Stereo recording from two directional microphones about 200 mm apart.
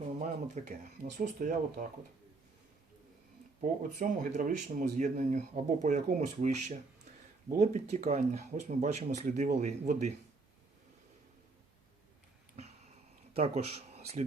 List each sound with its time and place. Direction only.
0.6 s speech: 35° right (ahead or behind)
3.6 s speech: 40° right (ahead or behind)
13.3 s speech: 30° right (ahead or behind)